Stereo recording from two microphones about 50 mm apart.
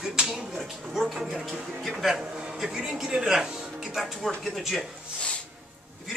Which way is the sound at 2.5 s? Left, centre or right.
Centre.